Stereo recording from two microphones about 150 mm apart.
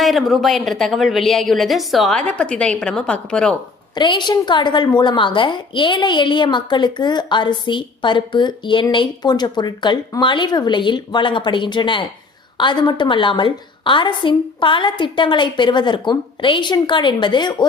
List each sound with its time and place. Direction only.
0.0 s a woman's voice: centre (ahead or behind)
3.9 s a woman's voice: 30° left (ahead or behind)